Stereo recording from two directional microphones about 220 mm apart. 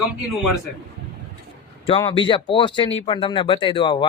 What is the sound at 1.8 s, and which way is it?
Speech, 25° left (ahead or behind).